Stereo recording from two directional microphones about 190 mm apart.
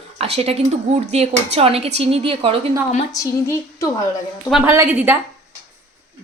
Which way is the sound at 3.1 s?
15° left (ahead or behind).